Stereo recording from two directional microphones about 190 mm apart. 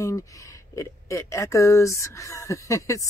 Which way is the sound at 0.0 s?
15° left (ahead or behind).